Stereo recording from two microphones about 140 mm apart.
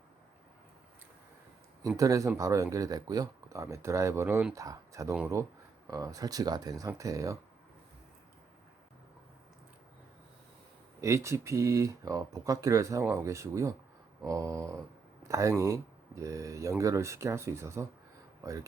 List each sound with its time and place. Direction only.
2.0 s speech: 25° right (ahead or behind)
11.0 s speech: 20° right (ahead or behind)